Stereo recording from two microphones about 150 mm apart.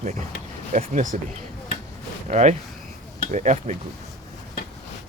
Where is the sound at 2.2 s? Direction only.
50° right (ahead or behind).